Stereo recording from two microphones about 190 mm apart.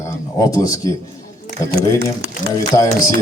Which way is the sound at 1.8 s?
55° right (ahead or behind).